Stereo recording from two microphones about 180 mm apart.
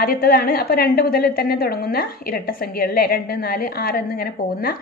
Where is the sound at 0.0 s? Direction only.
55° left (ahead or behind).